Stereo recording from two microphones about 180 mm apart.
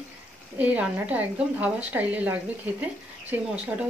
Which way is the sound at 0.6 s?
10° right (ahead or behind).